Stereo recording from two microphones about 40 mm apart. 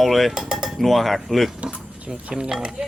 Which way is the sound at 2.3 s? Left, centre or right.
Centre.